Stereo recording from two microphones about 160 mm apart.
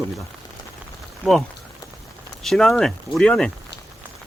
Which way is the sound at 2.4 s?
Centre (ahead or behind).